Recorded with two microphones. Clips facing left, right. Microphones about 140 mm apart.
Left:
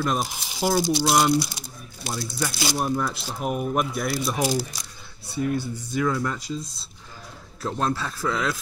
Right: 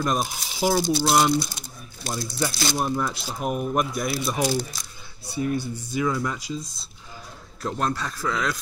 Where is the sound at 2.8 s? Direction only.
5° left (ahead or behind).